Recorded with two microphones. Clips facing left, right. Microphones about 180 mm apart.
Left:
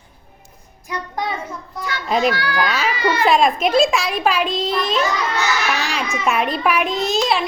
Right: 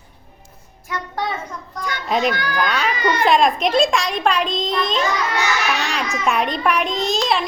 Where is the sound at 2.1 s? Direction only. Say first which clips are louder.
Left 2 dB; centre (ahead or behind).